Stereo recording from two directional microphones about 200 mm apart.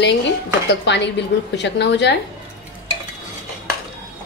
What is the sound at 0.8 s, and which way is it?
Speech, 60° left (ahead or behind).